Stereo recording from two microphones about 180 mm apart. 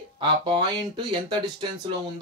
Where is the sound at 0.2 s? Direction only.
25° right (ahead or behind).